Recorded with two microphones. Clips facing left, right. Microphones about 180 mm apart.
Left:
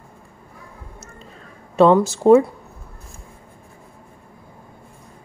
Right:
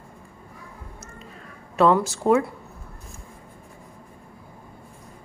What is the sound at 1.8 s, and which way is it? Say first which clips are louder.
Speech: left 5 dB; 25° left (ahead or behind).